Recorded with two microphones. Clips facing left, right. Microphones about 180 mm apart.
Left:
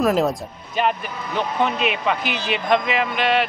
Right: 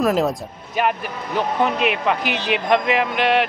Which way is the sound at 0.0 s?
Centre (ahead or behind).